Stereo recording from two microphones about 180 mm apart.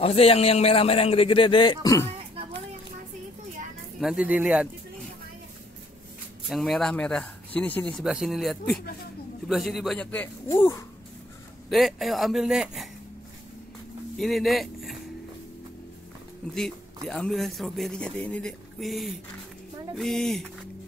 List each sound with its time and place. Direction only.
0.0 s a man's voice: 35° left (ahead or behind)
4.0 s a man's voice: 5° right (ahead or behind)
6.5 s a man's voice: centre (ahead or behind)
8.0 s a man's voice: 5° right (ahead or behind); by 10.9 s 15° left (ahead or behind)
11.7 s a man's voice: centre (ahead or behind)
14.1 s speech: centre (ahead or behind)
16.5 s a man's voice: 5° left (ahead or behind)